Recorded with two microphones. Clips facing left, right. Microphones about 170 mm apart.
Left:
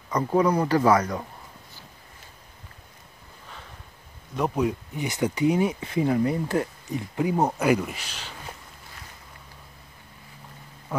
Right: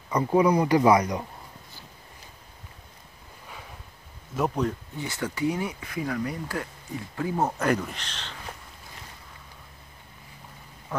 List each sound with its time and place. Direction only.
0.1 s speech: 10° right (ahead or behind)
4.4 s speech: 10° left (ahead or behind)